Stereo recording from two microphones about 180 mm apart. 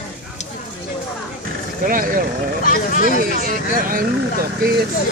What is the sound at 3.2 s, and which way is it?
Speech, 50° right (ahead or behind).